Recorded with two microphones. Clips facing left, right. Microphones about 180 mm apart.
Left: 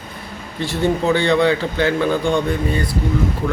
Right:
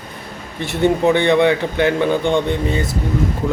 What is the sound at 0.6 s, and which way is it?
A man's voice, 20° right (ahead or behind).